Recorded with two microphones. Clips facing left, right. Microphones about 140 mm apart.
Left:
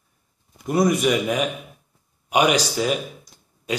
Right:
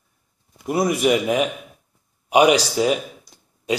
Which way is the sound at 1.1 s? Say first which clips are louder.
Right 2 dB; 20° right (ahead or behind).